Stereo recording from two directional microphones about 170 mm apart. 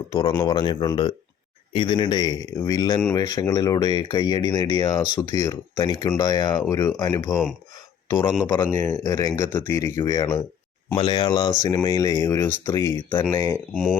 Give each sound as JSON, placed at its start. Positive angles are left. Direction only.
{"t": 0.1, "sound": "speech", "side_deg": 25}
{"t": 8.8, "sound": "speech", "side_deg": 15}
{"t": 12.4, "sound": "speech", "side_deg": 10}